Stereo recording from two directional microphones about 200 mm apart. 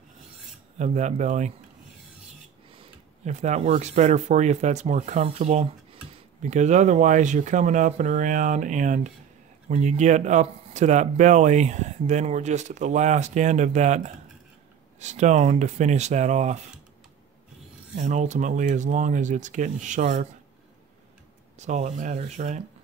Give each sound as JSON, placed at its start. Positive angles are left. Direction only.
{"t": 0.7, "sound": "speech", "side_deg": -35}
{"t": 2.8, "sound": "speech", "side_deg": -35}
{"t": 17.9, "sound": "speech", "side_deg": -40}
{"t": 21.5, "sound": "speech", "side_deg": -35}